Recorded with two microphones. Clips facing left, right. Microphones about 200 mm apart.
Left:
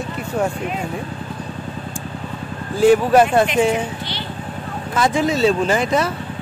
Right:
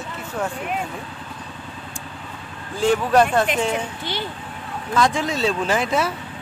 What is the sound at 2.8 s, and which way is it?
Speech, 5° left (ahead or behind).